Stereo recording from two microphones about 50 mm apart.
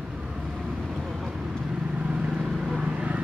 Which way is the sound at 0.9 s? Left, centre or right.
Centre.